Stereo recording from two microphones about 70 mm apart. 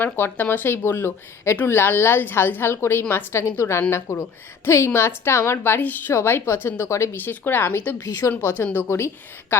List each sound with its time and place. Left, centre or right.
0.0 s a woman's voice: left